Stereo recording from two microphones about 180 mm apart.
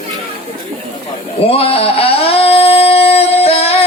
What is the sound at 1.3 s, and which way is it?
Singing, 30° left (ahead or behind).